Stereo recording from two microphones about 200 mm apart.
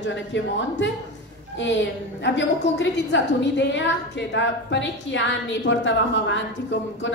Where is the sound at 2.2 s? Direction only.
65° left (ahead or behind).